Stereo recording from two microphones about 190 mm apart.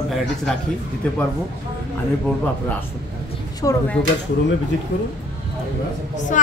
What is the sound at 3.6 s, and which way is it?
Speech, 15° left (ahead or behind).